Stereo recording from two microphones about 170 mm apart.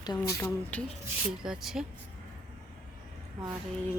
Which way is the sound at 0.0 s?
25° left (ahead or behind).